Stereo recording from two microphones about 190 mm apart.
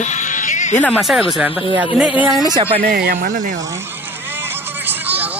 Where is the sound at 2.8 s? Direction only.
55° right (ahead or behind).